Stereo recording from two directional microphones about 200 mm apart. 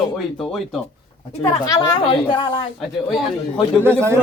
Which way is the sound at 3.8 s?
10° right (ahead or behind).